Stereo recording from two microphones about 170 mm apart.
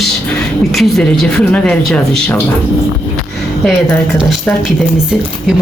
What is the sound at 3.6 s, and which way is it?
Speech, centre (ahead or behind).